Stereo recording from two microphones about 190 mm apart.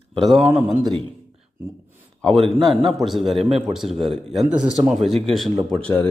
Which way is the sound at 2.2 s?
5° left (ahead or behind).